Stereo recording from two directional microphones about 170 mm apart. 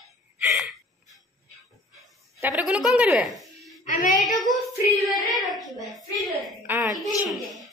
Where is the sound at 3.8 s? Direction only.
50° left (ahead or behind).